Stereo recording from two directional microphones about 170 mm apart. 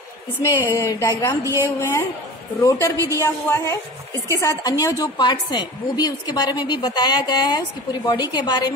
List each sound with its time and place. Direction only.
0.4 s a woman's voice: 20° left (ahead or behind)
3.1 s a woman's voice: 15° left (ahead or behind)